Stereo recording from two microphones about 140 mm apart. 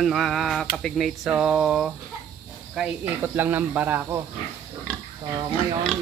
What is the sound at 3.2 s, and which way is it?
Speech, 15° right (ahead or behind).